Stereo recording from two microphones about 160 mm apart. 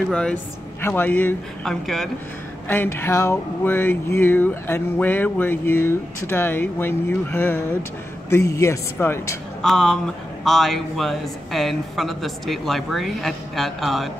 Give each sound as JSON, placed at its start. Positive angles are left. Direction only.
{"t": 0.1, "sound": "speech", "side_deg": 5}
{"t": 1.7, "sound": "speech", "side_deg": 0}
{"t": 2.7, "sound": "speech", "side_deg": 15}
{"t": 9.6, "sound": "speech", "side_deg": 5}